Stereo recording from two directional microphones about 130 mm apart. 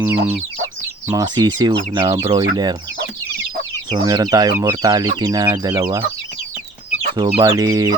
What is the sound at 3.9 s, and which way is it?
Speech, 30° right (ahead or behind).